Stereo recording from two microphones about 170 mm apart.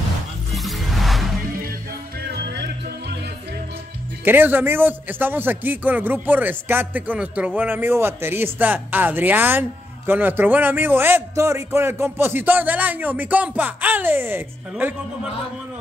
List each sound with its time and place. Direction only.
0.5 s music: centre (ahead or behind)
2.2 s music: 80° right
4.2 s a man's voice: 10° right (ahead or behind)